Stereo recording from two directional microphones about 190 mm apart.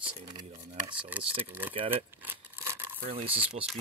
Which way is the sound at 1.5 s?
10° right (ahead or behind).